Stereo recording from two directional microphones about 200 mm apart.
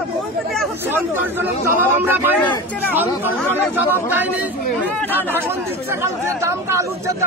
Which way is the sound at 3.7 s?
10° right (ahead or behind).